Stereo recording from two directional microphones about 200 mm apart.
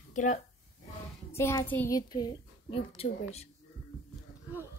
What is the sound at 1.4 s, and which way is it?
A woman's voice, 15° left (ahead or behind).